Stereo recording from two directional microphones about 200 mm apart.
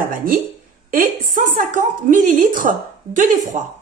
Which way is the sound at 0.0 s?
45° right (ahead or behind).